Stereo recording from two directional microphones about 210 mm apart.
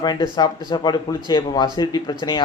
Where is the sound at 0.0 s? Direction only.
20° left (ahead or behind).